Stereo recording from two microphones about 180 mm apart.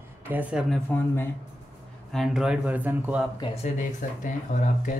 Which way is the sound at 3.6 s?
45° left (ahead or behind).